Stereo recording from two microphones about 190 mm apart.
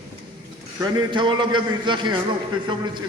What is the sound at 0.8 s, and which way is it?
A man's voice, 25° right (ahead or behind).